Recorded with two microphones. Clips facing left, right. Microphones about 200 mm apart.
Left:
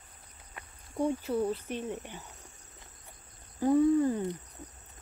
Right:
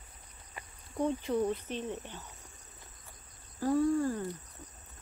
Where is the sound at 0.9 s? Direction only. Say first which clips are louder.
Left 1 dB; 10° left (ahead or behind).